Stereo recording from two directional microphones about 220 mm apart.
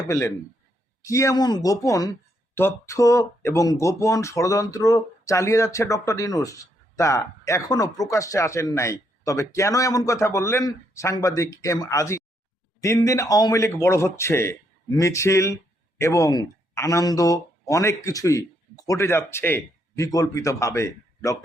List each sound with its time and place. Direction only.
0.1 s speech: 15° left (ahead or behind)